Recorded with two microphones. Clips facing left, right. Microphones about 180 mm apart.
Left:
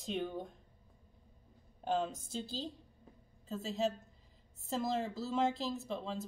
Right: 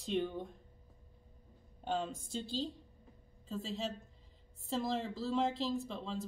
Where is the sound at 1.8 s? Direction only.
Centre (ahead or behind).